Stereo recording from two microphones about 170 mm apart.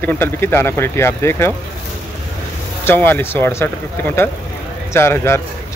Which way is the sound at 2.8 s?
10° left (ahead or behind).